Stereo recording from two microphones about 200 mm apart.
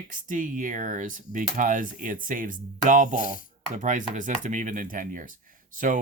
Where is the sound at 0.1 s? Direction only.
40° right (ahead or behind).